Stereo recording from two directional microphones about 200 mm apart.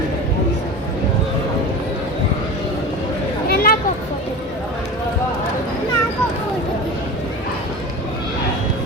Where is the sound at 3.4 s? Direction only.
50° left (ahead or behind).